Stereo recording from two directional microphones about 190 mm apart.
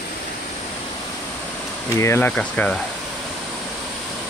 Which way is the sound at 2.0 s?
10° left (ahead or behind).